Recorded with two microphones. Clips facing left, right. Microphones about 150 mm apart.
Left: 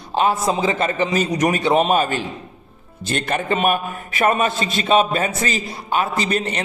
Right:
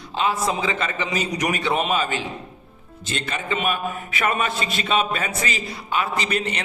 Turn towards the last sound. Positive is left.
turn(degrees=40)  # may be behind; listen again after turning